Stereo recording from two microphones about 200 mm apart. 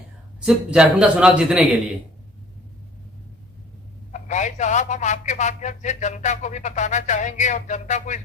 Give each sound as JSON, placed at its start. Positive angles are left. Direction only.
{"t": 0.3, "sound": "speech", "side_deg": -5}
{"t": 4.1, "sound": "a man's voice", "side_deg": 35}